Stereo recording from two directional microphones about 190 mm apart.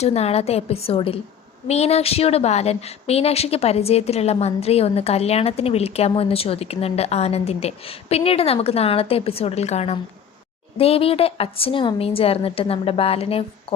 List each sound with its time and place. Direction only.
0.0 s a woman's voice: 35° left (ahead or behind)